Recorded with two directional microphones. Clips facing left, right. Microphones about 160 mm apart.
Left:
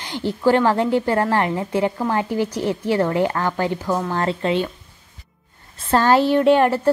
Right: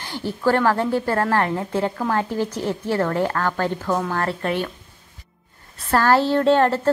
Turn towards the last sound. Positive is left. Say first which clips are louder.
# left 2 dB
turn(degrees=15)  # may be behind; listen again after turning